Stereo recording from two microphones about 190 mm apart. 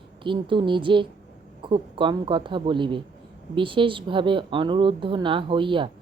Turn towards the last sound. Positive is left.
turn(degrees=-25)  # may be behind; listen again after turning